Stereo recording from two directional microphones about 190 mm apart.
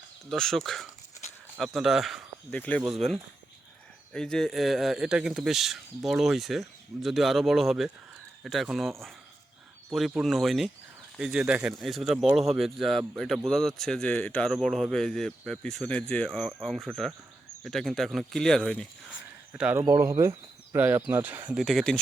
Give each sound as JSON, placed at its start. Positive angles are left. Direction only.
{"t": 0.3, "sound": "speech", "side_deg": 0}
{"t": 9.9, "sound": "speech", "side_deg": 0}
{"t": 19.8, "sound": "speech", "side_deg": -20}